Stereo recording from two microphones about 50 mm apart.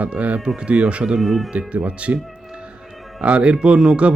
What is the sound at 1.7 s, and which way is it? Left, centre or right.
Speech, right.